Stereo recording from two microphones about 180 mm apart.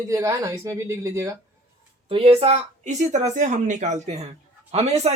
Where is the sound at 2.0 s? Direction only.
30° right (ahead or behind).